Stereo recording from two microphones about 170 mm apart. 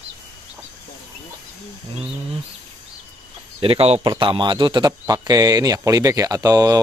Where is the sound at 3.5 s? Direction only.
35° right (ahead or behind).